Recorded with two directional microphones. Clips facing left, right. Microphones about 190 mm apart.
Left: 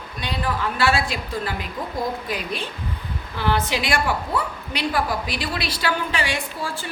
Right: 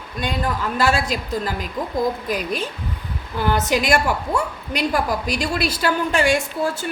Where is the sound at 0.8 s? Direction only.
40° right (ahead or behind).